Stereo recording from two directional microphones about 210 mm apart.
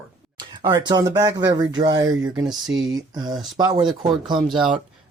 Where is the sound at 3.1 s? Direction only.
20° right (ahead or behind).